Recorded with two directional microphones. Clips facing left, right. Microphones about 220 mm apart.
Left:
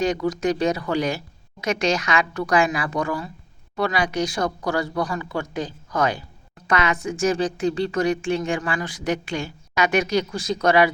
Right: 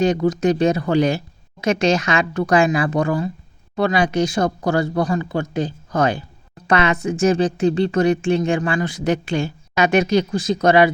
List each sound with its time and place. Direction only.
0.3 s speech: 25° right (ahead or behind)